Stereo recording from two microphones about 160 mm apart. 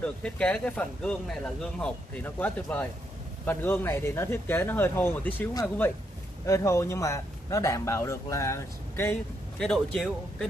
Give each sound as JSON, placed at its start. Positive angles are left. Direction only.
{"t": 0.0, "sound": "speech", "side_deg": 5}
{"t": 9.6, "sound": "speech", "side_deg": 5}